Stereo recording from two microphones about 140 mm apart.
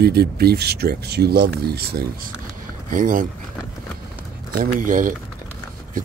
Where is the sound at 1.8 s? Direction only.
90° right.